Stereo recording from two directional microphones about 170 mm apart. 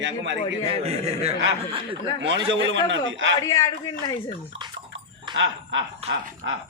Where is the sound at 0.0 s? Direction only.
90° right.